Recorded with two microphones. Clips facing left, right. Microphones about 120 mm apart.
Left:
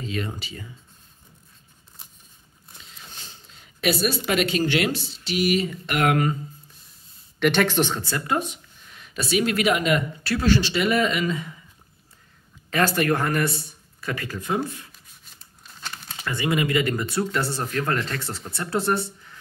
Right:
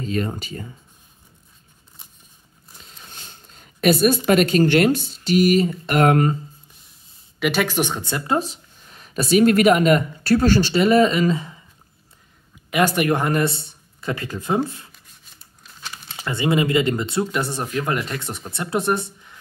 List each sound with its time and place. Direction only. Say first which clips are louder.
0.0 s speech: right 5 dB; 45° right (ahead or behind)
3.1 s a sound: right 1 dB; 50° right (ahead or behind)
4.3 s speech: right 6 dB; 45° right (ahead or behind)
7.3 s speech: left 1 dB; 5° right (ahead or behind)
8.4 s speech: right 3 dB; 35° right (ahead or behind)
12.6 s speech: right 3 dB; 15° right (ahead or behind)
16.2 s speech: right 4 dB; 25° right (ahead or behind)